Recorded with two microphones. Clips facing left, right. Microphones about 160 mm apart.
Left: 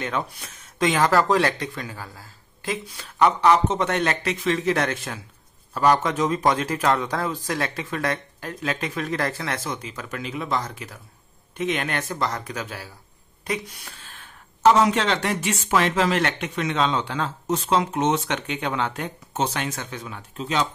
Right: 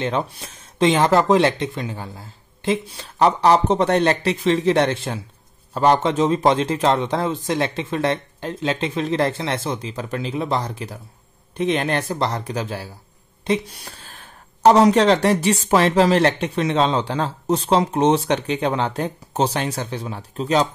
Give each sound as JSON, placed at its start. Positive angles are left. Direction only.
{"t": 0.0, "sound": "speech", "side_deg": -30}